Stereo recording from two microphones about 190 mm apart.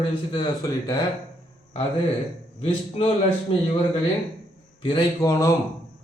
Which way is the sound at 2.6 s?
30° left (ahead or behind).